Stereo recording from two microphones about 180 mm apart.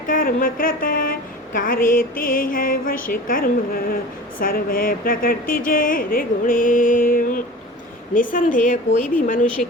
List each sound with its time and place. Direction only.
0.1 s speech: 50° left (ahead or behind)